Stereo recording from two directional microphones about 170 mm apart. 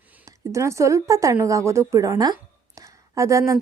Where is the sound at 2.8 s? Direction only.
20° right (ahead or behind).